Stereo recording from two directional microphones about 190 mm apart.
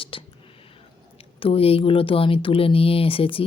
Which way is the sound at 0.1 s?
25° left (ahead or behind).